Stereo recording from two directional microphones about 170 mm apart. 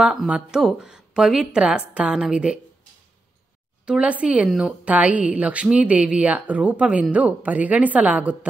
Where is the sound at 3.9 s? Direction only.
5° right (ahead or behind).